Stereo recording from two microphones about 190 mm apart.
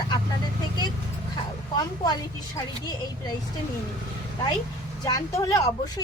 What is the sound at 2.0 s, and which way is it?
Speech, 20° left (ahead or behind).